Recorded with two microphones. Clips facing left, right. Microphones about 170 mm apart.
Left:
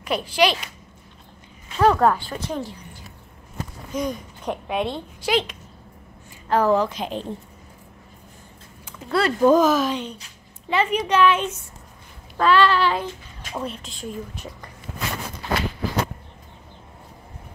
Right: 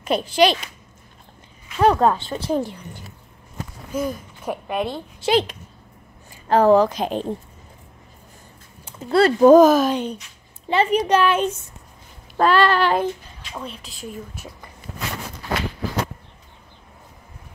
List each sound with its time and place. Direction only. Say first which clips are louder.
0.0 s speech: right 3 dB; 25° right (ahead or behind)
1.8 s speech: right 1 dB; 20° right (ahead or behind)
3.9 s a woman's voice: right 1 dB; 5° right (ahead or behind)
5.2 s speech: right 4 dB; 35° right (ahead or behind)
8.8 s speech: right 6 dB; 30° right (ahead or behind)
9.4 s speech: right 5 dB; 45° right (ahead or behind)
10.7 s speech: right 3 dB; 35° right (ahead or behind); by 13.0 s 50° right (ahead or behind)
13.6 s speech: left 3 dB; centre (ahead or behind)